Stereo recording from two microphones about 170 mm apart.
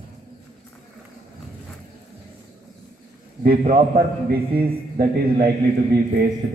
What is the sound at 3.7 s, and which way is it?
A man's voice, 60° right (ahead or behind).